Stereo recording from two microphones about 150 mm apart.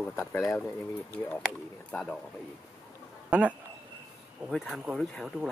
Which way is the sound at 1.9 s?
5° left (ahead or behind).